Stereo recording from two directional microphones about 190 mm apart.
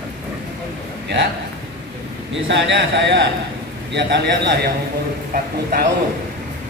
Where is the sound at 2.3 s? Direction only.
70° right (ahead or behind).